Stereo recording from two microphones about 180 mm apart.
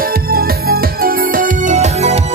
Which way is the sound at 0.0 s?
55° right (ahead or behind).